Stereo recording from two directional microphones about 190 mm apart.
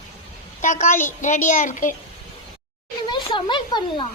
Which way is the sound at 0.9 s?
10° left (ahead or behind).